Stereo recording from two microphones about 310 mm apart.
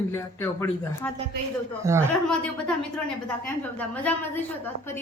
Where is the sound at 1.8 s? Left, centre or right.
Centre.